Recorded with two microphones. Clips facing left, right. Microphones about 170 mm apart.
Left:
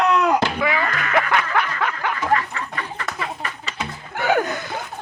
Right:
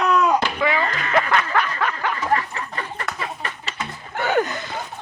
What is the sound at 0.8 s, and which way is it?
Music, 30° right (ahead or behind).